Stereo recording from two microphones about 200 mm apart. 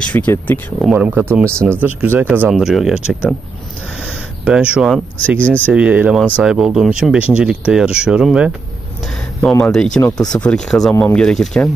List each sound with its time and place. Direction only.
0.0 s speech: 5° left (ahead or behind)
5.7 s speech: 5° right (ahead or behind)